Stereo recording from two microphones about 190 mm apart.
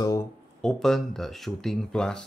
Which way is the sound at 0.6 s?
Centre (ahead or behind).